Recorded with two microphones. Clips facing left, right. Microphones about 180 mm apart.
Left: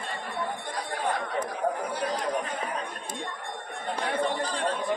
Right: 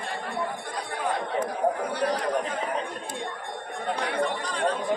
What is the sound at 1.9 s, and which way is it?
Chatter, 65° right (ahead or behind).